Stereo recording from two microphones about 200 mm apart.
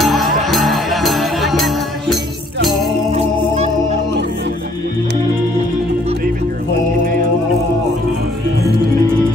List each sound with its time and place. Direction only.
0.0 s music: centre (ahead or behind)
3.1 s organ: 30° right (ahead or behind)